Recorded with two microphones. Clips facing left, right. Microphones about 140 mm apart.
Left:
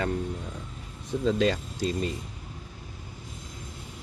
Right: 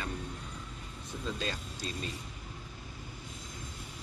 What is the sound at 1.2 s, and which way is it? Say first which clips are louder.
Bicycle bell: left 13 dB; 90° left.